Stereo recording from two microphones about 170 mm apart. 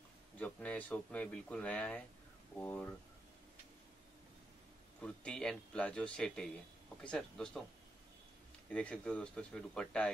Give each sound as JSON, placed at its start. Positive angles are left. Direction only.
{"t": 0.4, "sound": "speech", "side_deg": 10}
{"t": 5.0, "sound": "a man's voice", "side_deg": 5}
{"t": 8.6, "sound": "speech", "side_deg": 5}